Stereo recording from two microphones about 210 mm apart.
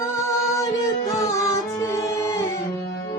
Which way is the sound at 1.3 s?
15° left (ahead or behind).